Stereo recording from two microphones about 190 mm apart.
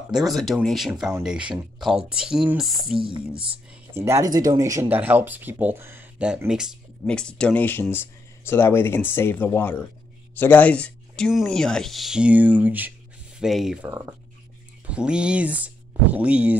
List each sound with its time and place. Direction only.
0.1 s speech: centre (ahead or behind)
3.0 s speech: 25° right (ahead or behind)
3.9 s speech: 15° right (ahead or behind)